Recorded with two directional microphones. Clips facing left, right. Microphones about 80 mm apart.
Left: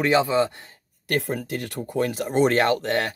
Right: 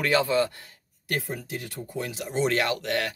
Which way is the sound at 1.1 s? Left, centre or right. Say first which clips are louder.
Left 5 dB; left.